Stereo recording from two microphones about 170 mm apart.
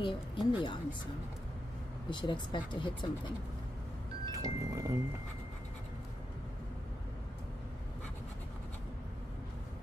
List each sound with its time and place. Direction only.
0.0 s speech: 30° left (ahead or behind)
2.0 s speech: 30° left (ahead or behind)
4.3 s music: 20° right (ahead or behind)